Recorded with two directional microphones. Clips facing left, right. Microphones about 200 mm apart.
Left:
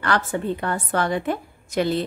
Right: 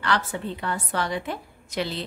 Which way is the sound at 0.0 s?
50° left (ahead or behind).